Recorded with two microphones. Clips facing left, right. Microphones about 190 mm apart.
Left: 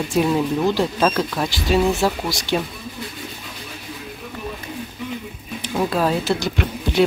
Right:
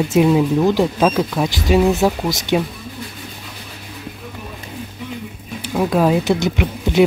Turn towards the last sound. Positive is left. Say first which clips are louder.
# right 4 dB
turn(degrees=-15)  # may be behind; listen again after turning